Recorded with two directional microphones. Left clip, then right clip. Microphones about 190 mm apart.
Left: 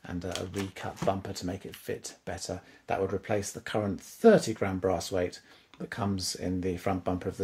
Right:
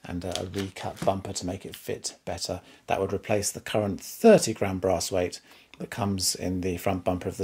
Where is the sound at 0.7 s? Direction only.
25° right (ahead or behind).